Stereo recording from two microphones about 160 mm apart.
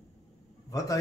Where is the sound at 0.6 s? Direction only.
20° left (ahead or behind).